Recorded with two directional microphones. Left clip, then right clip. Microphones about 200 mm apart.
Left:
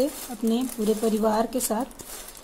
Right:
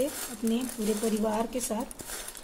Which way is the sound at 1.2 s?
35° left (ahead or behind).